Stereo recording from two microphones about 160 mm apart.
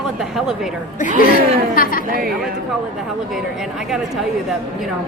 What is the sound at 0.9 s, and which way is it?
Speech, 55° left (ahead or behind).